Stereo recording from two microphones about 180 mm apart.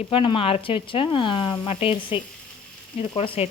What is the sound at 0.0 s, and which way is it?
Speech, 30° left (ahead or behind).